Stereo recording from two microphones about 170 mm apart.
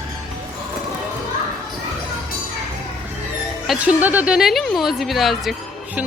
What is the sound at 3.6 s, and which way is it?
Speech, 5° right (ahead or behind).